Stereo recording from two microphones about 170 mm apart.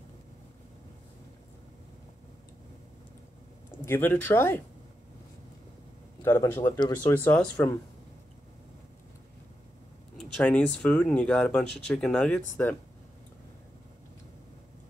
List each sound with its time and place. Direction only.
3.8 s speech: 10° left (ahead or behind)
6.2 s speech: 15° left (ahead or behind)
10.1 s speech: 5° left (ahead or behind)